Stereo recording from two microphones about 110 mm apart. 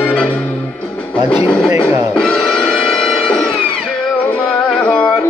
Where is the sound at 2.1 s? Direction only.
5° left (ahead or behind).